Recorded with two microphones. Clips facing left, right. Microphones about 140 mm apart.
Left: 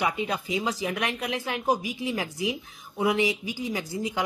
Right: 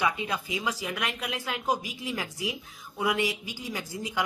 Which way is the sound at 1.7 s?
15° left (ahead or behind).